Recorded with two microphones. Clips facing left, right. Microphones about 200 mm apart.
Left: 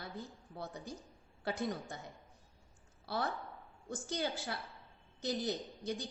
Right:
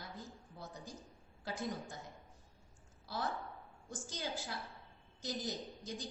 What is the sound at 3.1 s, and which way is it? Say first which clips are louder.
A woman's voice: left 3 dB; 65° left (ahead or behind).